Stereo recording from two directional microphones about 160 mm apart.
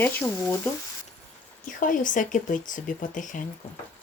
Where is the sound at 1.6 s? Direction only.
55° left (ahead or behind).